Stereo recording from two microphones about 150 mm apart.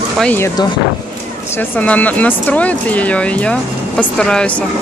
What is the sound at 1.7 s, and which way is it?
Speech, 10° left (ahead or behind).